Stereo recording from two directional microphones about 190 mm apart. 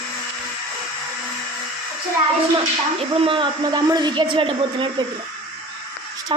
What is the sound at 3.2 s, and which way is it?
A woman's voice, 25° right (ahead or behind).